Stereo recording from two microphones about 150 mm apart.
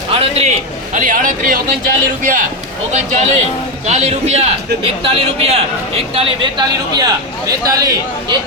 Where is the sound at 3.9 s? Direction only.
50° right (ahead or behind).